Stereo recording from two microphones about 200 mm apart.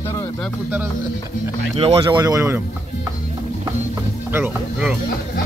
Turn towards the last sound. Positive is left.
turn(degrees=-10)  # may be behind; listen again after turning